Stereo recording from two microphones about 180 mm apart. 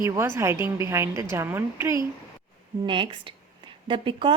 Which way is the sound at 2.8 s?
30° right (ahead or behind).